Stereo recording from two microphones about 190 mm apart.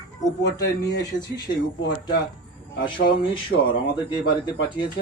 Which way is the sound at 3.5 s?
65° left (ahead or behind).